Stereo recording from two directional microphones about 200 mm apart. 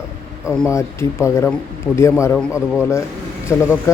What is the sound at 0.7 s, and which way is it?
Speech, 15° left (ahead or behind).